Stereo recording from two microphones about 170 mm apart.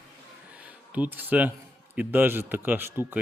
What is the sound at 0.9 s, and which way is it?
Speech, 10° right (ahead or behind).